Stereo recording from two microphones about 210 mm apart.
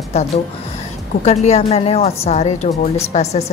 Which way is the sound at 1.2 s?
30° left (ahead or behind).